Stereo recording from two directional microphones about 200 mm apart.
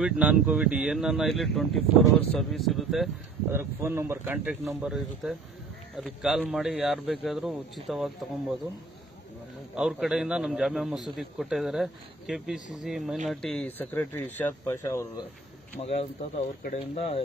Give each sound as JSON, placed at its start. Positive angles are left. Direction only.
{"t": 0.0, "sound": "a man's voice", "side_deg": -5}
{"t": 3.5, "sound": "a man's voice", "side_deg": -10}
{"t": 9.8, "sound": "a man's voice", "side_deg": -5}
{"t": 15.8, "sound": "speech", "side_deg": 30}